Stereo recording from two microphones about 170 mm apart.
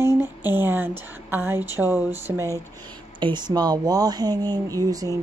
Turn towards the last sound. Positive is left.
turn(degrees=-20)  # may be behind; listen again after turning